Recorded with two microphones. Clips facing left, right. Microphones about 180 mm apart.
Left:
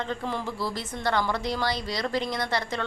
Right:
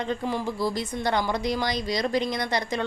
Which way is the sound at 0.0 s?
15° right (ahead or behind).